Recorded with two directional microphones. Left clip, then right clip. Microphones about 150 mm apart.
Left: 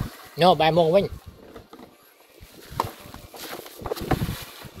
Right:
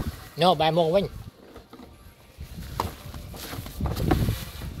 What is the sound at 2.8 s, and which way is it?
Horse, 10° right (ahead or behind).